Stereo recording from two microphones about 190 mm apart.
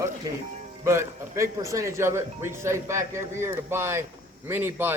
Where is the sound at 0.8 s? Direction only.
15° right (ahead or behind).